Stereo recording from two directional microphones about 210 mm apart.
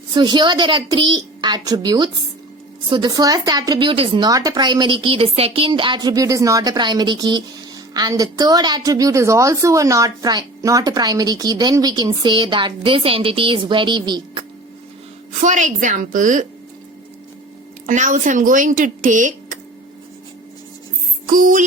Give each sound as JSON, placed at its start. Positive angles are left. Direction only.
{"t": 0.1, "sound": "a woman's voice", "side_deg": -20}
{"t": 15.4, "sound": "speech", "side_deg": -35}
{"t": 17.8, "sound": "speech", "side_deg": -35}
{"t": 21.2, "sound": "speech", "side_deg": -40}